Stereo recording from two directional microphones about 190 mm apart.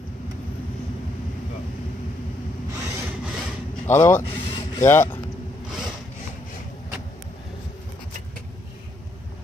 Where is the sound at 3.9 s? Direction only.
15° left (ahead or behind).